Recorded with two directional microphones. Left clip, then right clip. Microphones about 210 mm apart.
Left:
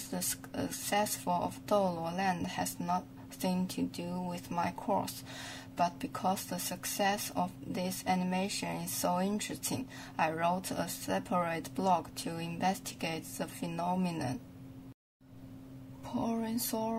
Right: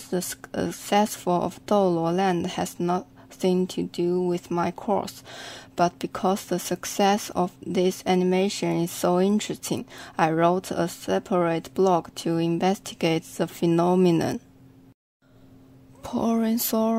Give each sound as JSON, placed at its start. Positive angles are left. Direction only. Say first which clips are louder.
{"t": 0.1, "sound": "speech", "louder": "right 11 dB", "side_deg": -45}
{"t": 16.1, "sound": "speech", "louder": "right 11 dB", "side_deg": -45}